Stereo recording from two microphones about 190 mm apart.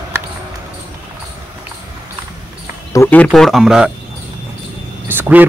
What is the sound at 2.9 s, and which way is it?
Speech, 10° left (ahead or behind).